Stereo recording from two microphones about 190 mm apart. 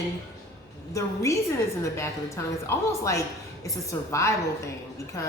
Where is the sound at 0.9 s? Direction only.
15° left (ahead or behind).